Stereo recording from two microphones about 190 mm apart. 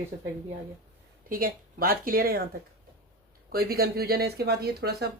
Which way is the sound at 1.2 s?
50° right (ahead or behind).